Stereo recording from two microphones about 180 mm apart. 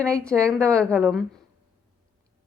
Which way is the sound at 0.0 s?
5° left (ahead or behind).